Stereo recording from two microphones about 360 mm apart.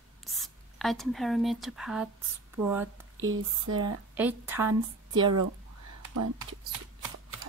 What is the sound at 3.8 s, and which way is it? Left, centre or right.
Speech, centre.